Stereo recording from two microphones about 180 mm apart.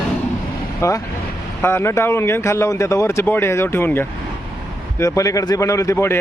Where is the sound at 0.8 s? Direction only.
15° left (ahead or behind).